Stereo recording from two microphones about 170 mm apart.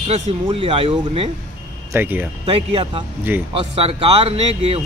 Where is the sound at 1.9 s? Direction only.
10° right (ahead or behind).